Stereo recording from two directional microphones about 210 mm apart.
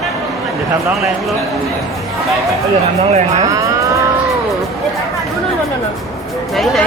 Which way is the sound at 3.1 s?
35° right (ahead or behind).